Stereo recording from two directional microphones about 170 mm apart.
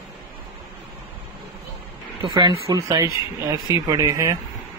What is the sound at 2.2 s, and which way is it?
Speech, 25° right (ahead or behind).